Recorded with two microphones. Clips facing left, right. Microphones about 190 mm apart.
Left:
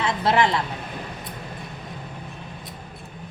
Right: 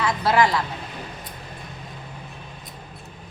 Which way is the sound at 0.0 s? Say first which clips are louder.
Right 1 dB; 25° left (ahead or behind).